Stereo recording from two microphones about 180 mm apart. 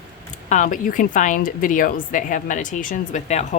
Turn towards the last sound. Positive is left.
turn(degrees=40)  # may be behind; listen again after turning